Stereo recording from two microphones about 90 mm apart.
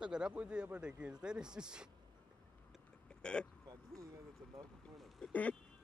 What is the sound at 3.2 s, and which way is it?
Speech, 10° left (ahead or behind).